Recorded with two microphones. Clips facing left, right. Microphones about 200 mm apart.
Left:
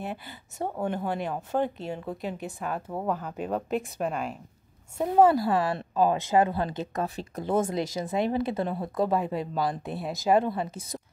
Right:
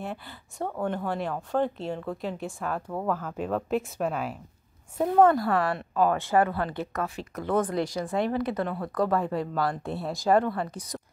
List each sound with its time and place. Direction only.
0.3 s speech: 20° left (ahead or behind)
1.6 s a woman's voice: 5° left (ahead or behind)
2.9 s a woman's voice: 15° left (ahead or behind)
3.3 s a woman's voice: centre (ahead or behind)
4.9 s a woman's voice: 10° left (ahead or behind)
7.0 s speech: 30° left (ahead or behind)